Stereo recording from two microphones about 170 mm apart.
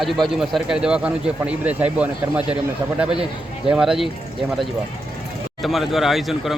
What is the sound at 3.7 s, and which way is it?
Speech, 5° right (ahead or behind).